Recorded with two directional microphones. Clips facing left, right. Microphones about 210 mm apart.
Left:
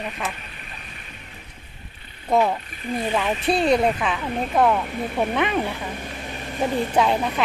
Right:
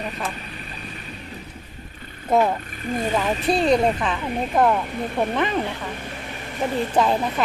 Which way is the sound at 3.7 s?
5° left (ahead or behind).